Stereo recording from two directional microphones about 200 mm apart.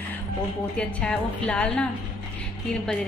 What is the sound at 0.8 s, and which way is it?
A woman's voice, 5° left (ahead or behind).